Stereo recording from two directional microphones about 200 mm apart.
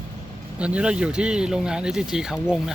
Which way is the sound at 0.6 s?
5° right (ahead or behind).